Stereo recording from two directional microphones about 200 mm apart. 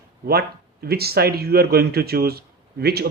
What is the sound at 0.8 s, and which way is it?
Speech, 50° right (ahead or behind).